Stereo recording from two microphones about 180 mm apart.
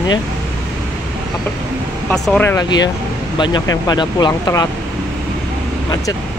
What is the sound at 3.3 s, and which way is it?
Speech, 25° left (ahead or behind).